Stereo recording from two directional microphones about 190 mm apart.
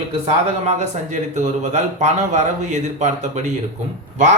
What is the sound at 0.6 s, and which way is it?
Speech, 35° right (ahead or behind).